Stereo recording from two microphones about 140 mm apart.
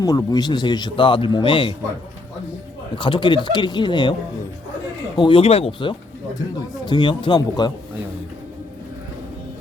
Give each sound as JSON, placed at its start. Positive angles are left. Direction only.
{"t": 0.0, "sound": "a man's voice", "side_deg": 25}
{"t": 2.9, "sound": "a man's voice", "side_deg": 35}
{"t": 5.1, "sound": "a man's voice", "side_deg": 35}